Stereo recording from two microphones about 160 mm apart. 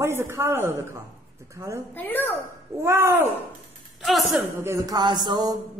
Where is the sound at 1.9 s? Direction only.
10° left (ahead or behind).